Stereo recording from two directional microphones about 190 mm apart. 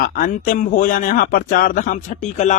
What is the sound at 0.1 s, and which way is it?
Speech, 45° left (ahead or behind).